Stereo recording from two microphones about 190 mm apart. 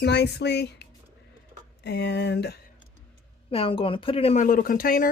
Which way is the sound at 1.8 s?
65° left (ahead or behind).